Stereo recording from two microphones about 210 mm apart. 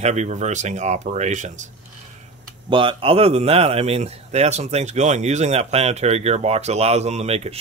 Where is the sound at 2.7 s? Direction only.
25° right (ahead or behind).